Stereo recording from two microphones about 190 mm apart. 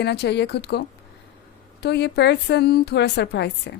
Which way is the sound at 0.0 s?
60° left (ahead or behind).